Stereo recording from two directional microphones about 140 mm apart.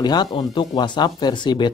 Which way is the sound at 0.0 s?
30° left (ahead or behind).